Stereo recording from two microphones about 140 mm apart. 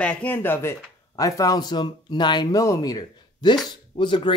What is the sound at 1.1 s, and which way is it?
Speech, 25° left (ahead or behind).